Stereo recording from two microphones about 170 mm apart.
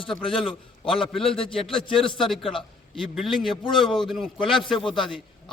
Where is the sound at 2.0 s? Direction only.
Centre (ahead or behind).